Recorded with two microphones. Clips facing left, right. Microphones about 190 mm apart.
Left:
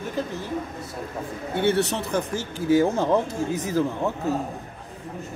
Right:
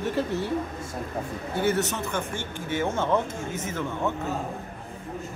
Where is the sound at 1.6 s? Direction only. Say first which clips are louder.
Left 3 dB; 30° left (ahead or behind).